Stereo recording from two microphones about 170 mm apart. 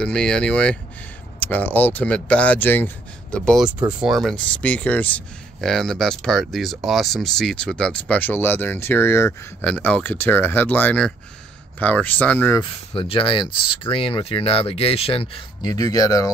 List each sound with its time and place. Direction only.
0.0 s speech: 5° left (ahead or behind)
12.9 s speech: 30° left (ahead or behind)